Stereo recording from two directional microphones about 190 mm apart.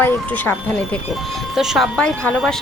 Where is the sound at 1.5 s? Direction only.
Centre (ahead or behind).